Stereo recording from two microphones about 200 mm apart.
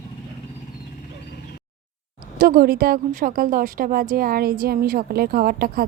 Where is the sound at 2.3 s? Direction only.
45° right (ahead or behind).